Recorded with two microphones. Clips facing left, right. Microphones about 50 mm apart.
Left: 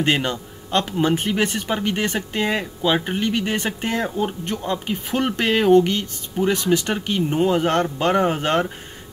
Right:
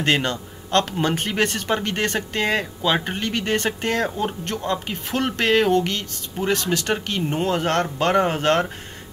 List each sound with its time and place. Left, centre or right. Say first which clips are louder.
0.0 s a man's voice: even; centre
7.2 s speech: left 3 dB; right
7.4 s speech: left 2 dB; centre